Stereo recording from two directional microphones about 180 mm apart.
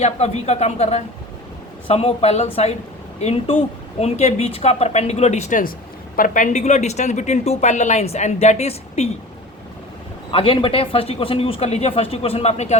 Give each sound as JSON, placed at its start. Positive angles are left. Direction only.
{"t": 0.0, "sound": "a woman's voice", "side_deg": 35}
{"t": 10.3, "sound": "a woman's voice", "side_deg": 30}